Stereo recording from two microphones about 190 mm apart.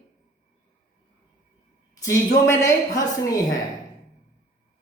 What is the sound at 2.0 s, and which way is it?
A woman's voice, 15° left (ahead or behind).